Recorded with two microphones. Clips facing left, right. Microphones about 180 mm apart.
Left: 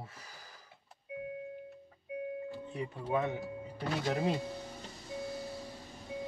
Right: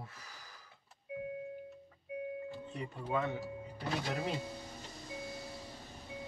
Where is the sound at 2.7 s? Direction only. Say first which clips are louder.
Left 3 dB; 20° left (ahead or behind).